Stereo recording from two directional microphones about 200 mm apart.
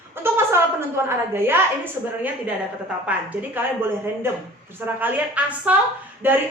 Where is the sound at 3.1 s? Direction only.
10° right (ahead or behind).